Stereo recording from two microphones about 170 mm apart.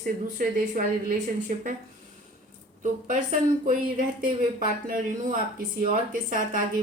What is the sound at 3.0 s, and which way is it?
Speech, 50° right (ahead or behind).